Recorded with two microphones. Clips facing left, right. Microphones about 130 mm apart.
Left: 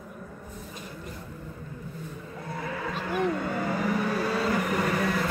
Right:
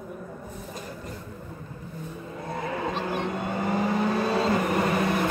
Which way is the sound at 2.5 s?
25° right (ahead or behind).